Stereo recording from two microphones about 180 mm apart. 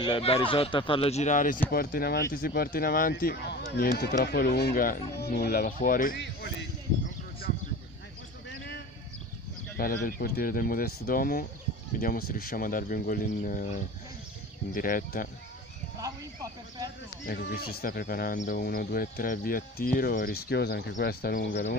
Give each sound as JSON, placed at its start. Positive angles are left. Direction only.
{"t": 0.0, "sound": "speech", "side_deg": 30}
{"t": 6.1, "sound": "speech", "side_deg": 70}
{"t": 8.5, "sound": "a sound", "side_deg": 70}
{"t": 9.8, "sound": "speech", "side_deg": 55}
{"t": 17.3, "sound": "speech", "side_deg": 60}